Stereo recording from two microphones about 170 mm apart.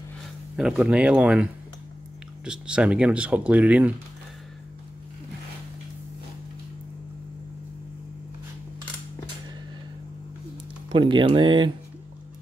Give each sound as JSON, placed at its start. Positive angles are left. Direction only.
{"t": 0.6, "sound": "speech", "side_deg": -5}
{"t": 10.9, "sound": "speech", "side_deg": -30}